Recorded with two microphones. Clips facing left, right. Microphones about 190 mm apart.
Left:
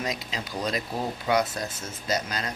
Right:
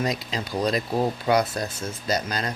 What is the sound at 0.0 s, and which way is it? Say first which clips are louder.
Speech: right 5 dB; 40° right (ahead or behind).